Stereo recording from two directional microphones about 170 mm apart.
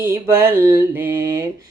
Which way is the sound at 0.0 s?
15° right (ahead or behind).